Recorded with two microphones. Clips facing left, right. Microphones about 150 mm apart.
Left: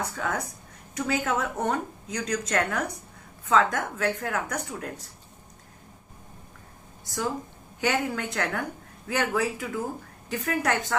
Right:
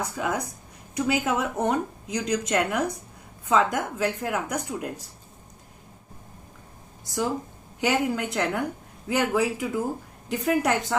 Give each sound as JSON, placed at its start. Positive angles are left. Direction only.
{"t": 0.0, "sound": "a woman's voice", "side_deg": -15}
{"t": 7.8, "sound": "speech", "side_deg": -20}